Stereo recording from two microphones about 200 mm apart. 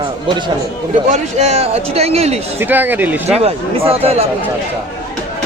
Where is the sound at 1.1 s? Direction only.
35° right (ahead or behind).